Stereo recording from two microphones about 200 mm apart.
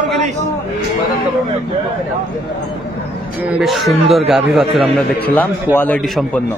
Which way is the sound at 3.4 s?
5° right (ahead or behind).